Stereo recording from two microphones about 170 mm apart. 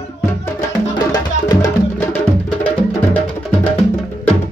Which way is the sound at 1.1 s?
20° left (ahead or behind).